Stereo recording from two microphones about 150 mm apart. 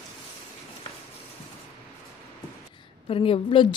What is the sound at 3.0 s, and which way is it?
Speech, 40° left (ahead or behind).